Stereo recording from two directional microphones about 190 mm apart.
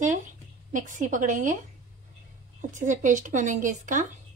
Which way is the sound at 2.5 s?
40° right (ahead or behind).